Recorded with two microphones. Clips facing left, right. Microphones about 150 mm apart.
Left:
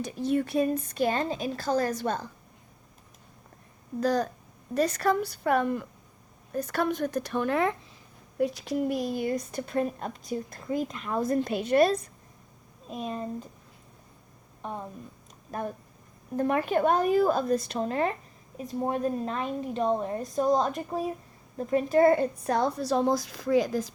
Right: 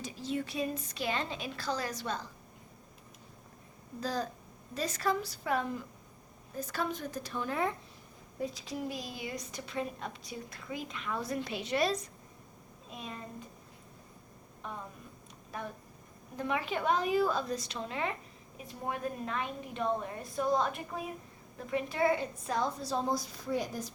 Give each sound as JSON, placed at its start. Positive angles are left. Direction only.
{"t": 0.0, "sound": "a woman's voice", "side_deg": 60}
{"t": 4.0, "sound": "a woman's voice", "side_deg": 65}
{"t": 16.4, "sound": "a woman's voice", "side_deg": 45}